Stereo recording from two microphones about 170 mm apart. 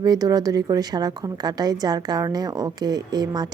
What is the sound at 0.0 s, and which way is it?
A woman's voice, 20° right (ahead or behind).